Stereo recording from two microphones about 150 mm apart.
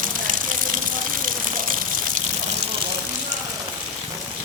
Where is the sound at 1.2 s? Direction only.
65° right (ahead or behind).